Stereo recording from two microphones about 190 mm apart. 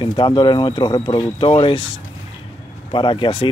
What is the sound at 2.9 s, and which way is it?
Speech, 25° left (ahead or behind).